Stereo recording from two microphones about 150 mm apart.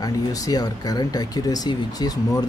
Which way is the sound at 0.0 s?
25° left (ahead or behind).